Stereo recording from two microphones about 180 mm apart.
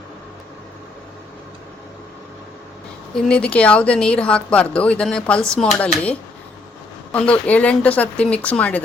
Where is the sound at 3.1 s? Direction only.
5° left (ahead or behind).